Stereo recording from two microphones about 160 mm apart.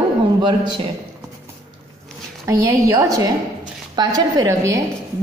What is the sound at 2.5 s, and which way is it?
A woman's voice, 20° right (ahead or behind).